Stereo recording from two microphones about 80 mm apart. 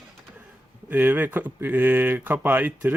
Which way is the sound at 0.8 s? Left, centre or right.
Right.